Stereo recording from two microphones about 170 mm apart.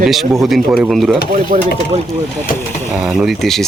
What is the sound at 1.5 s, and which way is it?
Speech, 45° right (ahead or behind).